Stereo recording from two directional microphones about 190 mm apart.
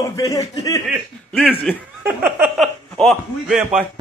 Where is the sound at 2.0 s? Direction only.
10° right (ahead or behind).